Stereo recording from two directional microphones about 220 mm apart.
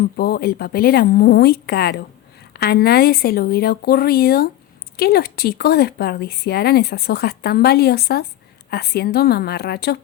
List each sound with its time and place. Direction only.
0.2 s speech: 45° left (ahead or behind)